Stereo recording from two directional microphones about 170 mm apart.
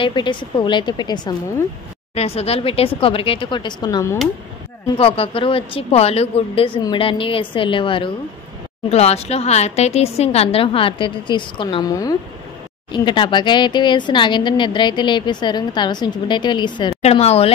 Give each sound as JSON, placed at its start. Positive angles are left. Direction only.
{"t": 0.0, "sound": "speech", "side_deg": 30}
{"t": 2.1, "sound": "a woman's voice", "side_deg": 35}
{"t": 4.9, "sound": "a woman's voice", "side_deg": 35}